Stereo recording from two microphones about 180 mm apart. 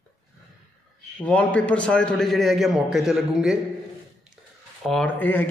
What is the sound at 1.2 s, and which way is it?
A man's voice, 5° left (ahead or behind).